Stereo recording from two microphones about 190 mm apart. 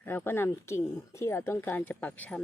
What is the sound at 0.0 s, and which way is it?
Speech, 10° left (ahead or behind).